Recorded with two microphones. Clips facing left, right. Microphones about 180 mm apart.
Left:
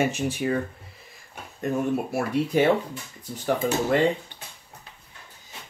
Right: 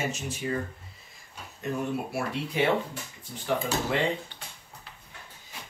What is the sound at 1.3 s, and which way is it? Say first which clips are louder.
Speech: left 5 dB; 50° left (ahead or behind).